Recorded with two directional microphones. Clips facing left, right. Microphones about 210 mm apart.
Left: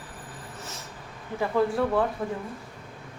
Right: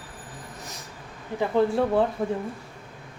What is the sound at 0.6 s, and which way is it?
Train, 15° right (ahead or behind).